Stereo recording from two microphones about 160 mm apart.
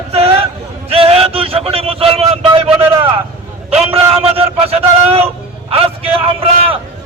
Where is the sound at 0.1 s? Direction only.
35° right (ahead or behind).